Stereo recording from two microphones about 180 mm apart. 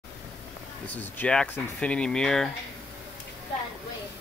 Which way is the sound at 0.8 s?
10° left (ahead or behind).